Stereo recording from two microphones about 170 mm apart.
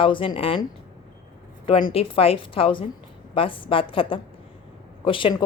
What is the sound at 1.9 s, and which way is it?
Speech, 35° left (ahead or behind).